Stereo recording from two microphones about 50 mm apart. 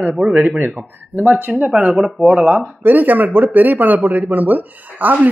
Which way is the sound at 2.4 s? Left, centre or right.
Right.